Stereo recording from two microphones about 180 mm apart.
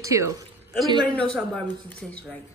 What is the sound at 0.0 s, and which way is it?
Speech, 15° right (ahead or behind).